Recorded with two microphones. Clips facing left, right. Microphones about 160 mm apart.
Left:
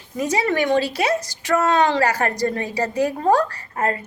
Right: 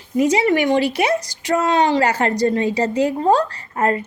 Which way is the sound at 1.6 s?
50° left (ahead or behind).